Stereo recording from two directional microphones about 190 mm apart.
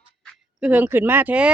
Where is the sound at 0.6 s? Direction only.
10° right (ahead or behind).